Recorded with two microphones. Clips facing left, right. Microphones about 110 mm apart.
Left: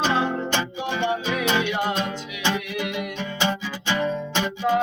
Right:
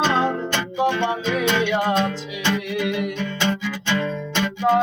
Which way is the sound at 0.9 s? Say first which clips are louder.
Right 2 dB; 15° left (ahead or behind).